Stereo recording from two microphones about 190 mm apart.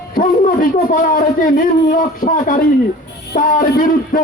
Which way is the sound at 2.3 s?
45° left (ahead or behind).